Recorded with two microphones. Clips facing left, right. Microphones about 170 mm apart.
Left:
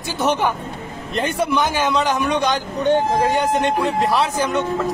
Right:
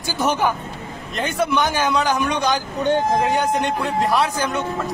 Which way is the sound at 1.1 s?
35° left (ahead or behind).